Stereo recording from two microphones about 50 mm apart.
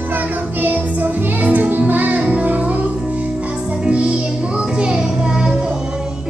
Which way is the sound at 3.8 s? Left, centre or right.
Right.